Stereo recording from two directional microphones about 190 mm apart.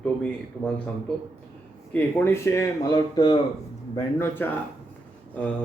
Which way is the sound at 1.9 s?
10° left (ahead or behind).